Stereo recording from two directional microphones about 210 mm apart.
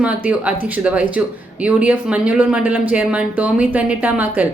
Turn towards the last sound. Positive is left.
turn(degrees=-5)  # may be behind; listen again after turning